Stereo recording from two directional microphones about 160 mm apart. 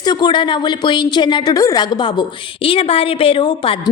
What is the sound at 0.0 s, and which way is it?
A woman's voice, 30° left (ahead or behind).